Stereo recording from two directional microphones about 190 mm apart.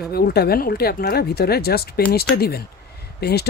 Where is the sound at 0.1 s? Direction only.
55° left (ahead or behind).